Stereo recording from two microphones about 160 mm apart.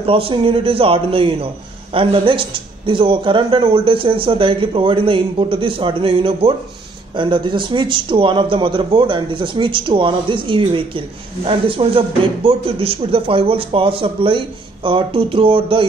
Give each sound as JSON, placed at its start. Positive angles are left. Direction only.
{"t": 0.0, "sound": "speech", "side_deg": -35}